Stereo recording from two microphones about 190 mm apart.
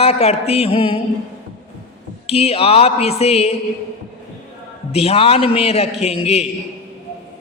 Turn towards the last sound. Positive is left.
turn(degrees=30)  # may be behind; listen again after turning